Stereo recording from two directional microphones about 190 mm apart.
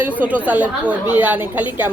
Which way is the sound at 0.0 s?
10° right (ahead or behind).